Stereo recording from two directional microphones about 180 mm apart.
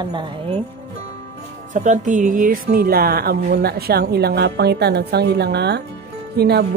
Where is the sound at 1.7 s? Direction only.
45° right (ahead or behind).